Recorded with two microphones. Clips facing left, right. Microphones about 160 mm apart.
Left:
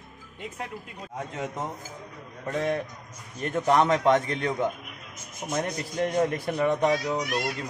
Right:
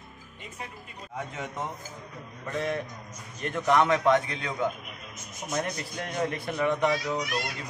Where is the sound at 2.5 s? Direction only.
35° left (ahead or behind).